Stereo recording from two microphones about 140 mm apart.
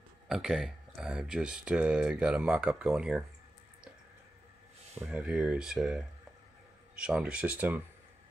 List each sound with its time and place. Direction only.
0.3 s speech: 5° right (ahead or behind)
4.9 s speech: 10° right (ahead or behind)